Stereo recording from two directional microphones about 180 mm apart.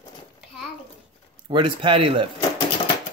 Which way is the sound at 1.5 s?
30° right (ahead or behind).